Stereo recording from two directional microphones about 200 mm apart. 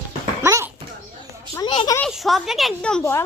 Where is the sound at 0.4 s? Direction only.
10° right (ahead or behind).